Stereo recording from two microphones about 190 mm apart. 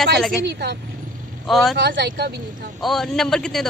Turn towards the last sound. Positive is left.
turn(degrees=0)  # may be behind; listen again after turning